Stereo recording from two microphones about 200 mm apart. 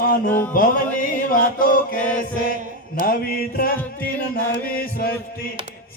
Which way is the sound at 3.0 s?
50° left (ahead or behind).